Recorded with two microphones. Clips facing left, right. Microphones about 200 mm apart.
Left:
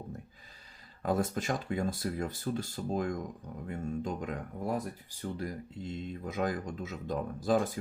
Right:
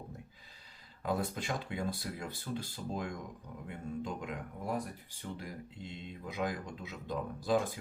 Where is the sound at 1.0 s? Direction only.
45° left (ahead or behind).